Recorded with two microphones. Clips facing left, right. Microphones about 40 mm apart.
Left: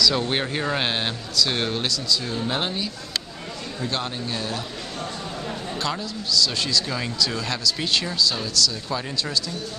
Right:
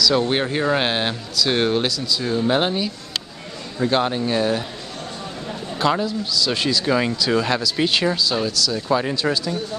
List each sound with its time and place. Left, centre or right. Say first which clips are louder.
0.0 s speech: right 4 dB; centre
5.8 s speech: right 11 dB; centre
8.8 s speech: right 8 dB; right